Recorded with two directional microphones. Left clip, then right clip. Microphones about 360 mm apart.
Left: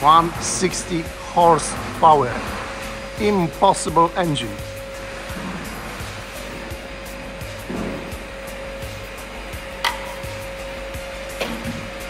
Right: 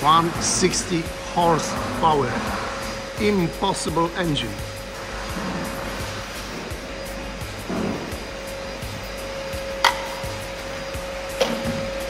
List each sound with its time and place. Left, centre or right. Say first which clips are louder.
0.0 s speech: left 3 dB; centre
3.2 s speech: left 4 dB; centre
9.8 s music: right 4 dB; centre